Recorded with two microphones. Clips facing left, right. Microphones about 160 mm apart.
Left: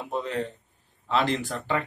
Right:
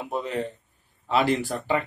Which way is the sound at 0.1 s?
10° right (ahead or behind).